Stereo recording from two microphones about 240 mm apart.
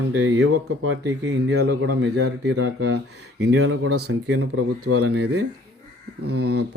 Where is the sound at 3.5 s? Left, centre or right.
Right.